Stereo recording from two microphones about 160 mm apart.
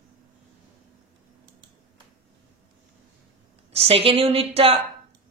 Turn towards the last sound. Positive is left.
turn(degrees=-35)  # may be behind; listen again after turning